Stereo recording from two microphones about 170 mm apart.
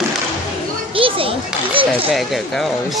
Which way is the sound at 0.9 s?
30° right (ahead or behind).